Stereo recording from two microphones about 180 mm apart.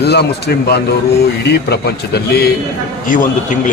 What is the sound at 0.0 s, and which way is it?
A man's voice, 65° left (ahead or behind).